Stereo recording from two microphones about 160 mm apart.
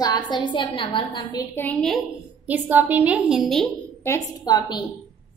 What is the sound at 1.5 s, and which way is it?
Speech, 10° left (ahead or behind).